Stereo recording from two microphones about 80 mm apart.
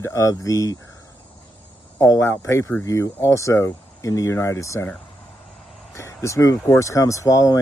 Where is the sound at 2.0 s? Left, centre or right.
Left.